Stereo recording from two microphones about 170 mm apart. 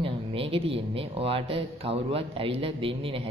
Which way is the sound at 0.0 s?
30° right (ahead or behind).